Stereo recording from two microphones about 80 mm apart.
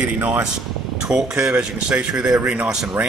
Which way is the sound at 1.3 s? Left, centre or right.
Right.